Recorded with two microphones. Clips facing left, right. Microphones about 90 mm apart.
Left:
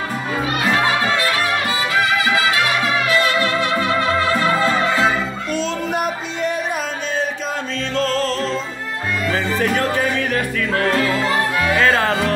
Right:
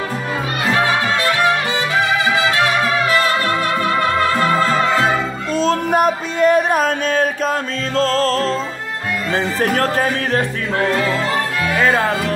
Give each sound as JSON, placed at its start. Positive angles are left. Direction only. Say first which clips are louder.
{"t": 5.5, "sound": "music", "louder": "right 7 dB", "side_deg": -40}
{"t": 7.9, "sound": "music", "louder": "right 4 dB", "side_deg": -35}
{"t": 9.7, "sound": "music", "louder": "right 2 dB", "side_deg": -40}
{"t": 11.8, "sound": "music", "louder": "right 2 dB", "side_deg": -15}